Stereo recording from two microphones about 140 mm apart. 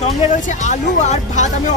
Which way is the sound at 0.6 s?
60° left (ahead or behind).